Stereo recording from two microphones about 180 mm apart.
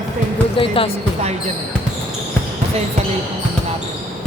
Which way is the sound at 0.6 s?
30° left (ahead or behind).